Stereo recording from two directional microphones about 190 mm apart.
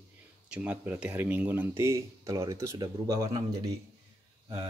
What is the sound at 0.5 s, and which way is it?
Speech, 5° right (ahead or behind).